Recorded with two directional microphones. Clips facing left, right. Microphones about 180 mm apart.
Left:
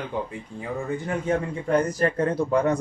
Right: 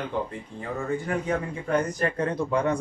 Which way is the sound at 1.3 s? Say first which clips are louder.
Left 5 dB; 30° left (ahead or behind).